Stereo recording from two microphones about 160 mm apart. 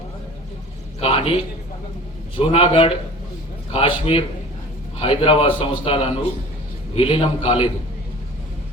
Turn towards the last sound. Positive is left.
turn(degrees=35)  # may be behind; listen again after turning